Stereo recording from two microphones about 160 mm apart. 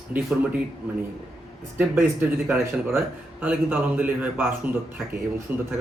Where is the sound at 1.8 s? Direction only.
10° right (ahead or behind).